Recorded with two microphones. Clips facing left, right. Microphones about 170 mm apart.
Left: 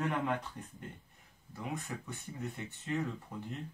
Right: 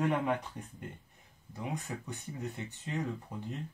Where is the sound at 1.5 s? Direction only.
20° right (ahead or behind).